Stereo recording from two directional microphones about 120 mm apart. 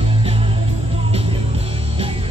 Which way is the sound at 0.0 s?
50° right (ahead or behind).